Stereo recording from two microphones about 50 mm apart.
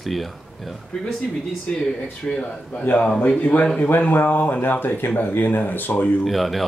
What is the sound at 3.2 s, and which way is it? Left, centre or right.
Speech, left.